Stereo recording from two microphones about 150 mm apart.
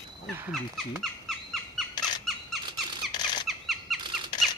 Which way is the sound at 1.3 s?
Centre (ahead or behind).